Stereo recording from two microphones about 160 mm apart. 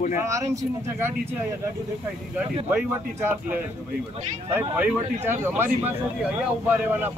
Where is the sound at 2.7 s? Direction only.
10° right (ahead or behind).